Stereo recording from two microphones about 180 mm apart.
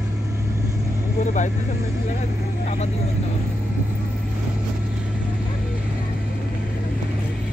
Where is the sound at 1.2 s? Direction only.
40° left (ahead or behind).